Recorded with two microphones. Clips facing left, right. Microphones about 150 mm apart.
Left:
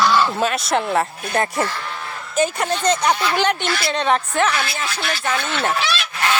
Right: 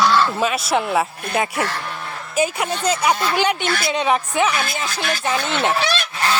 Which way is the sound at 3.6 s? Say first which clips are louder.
Right 1 dB; 50° right (ahead or behind).